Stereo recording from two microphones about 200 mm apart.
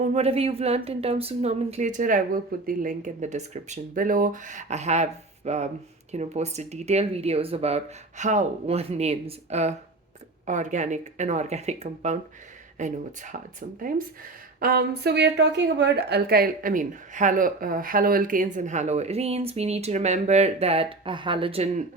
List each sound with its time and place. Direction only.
0.0 s a woman's voice: 35° right (ahead or behind)